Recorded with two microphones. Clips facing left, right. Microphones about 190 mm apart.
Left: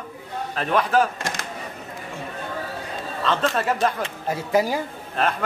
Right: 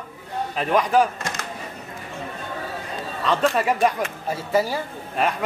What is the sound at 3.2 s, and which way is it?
Speech, 10° right (ahead or behind).